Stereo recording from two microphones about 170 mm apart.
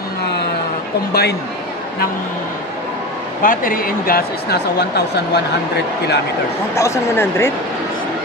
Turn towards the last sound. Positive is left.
turn(degrees=15)  # may be behind; listen again after turning